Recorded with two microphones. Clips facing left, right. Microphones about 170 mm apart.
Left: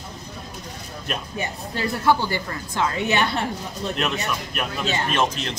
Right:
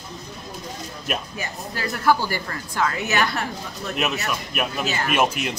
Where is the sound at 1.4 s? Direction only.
25° left (ahead or behind).